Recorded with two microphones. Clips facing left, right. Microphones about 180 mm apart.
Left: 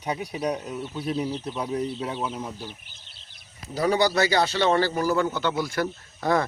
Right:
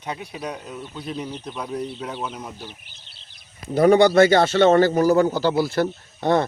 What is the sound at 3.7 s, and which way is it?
A man's voice, 50° right (ahead or behind).